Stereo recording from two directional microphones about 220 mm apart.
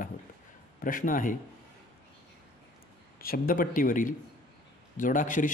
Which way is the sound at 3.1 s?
40° left (ahead or behind).